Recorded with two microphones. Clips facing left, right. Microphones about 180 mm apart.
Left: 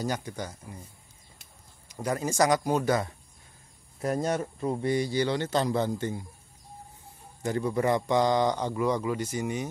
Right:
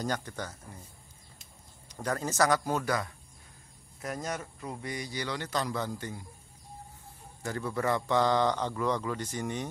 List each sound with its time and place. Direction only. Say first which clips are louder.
0.0 s a man's voice: left 2 dB; 10° left (ahead or behind)
1.9 s a man's voice: left 3 dB; 10° left (ahead or behind)
7.4 s a man's voice: left 5 dB; 20° left (ahead or behind)